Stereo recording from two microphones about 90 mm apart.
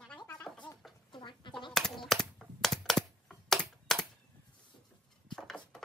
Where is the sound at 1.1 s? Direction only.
60° left (ahead or behind).